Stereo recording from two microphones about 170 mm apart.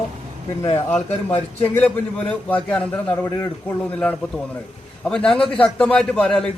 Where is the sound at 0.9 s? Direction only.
10° left (ahead or behind).